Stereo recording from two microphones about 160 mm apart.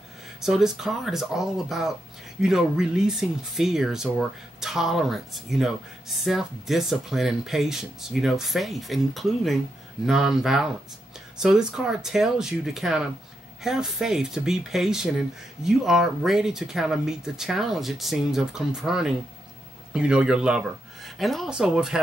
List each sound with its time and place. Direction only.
0.4 s speech: centre (ahead or behind)